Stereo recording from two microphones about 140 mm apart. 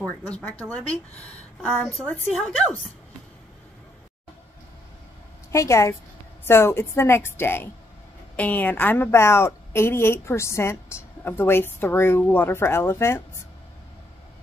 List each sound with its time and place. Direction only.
0.3 s a woman's voice: 10° left (ahead or behind)
1.6 s a woman's voice: 5° right (ahead or behind)
5.5 s a woman's voice: 20° left (ahead or behind)